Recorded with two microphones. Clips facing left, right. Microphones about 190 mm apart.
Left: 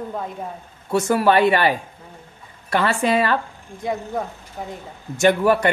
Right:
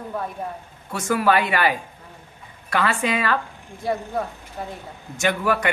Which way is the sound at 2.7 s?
35° left (ahead or behind).